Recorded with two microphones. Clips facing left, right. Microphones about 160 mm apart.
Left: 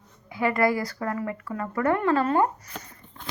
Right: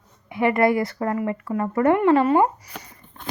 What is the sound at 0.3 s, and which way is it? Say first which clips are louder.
A woman's voice: right 4 dB; 25° right (ahead or behind).